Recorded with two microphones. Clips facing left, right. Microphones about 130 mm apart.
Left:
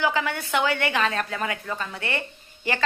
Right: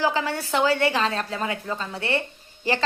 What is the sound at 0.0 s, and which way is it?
A woman's voice, 30° right (ahead or behind).